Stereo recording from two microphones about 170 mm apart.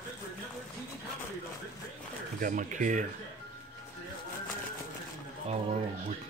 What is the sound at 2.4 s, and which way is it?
Speech, 50° right (ahead or behind).